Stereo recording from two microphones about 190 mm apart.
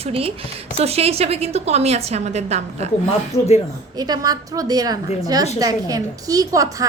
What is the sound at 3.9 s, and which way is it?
A woman's voice, 20° right (ahead or behind).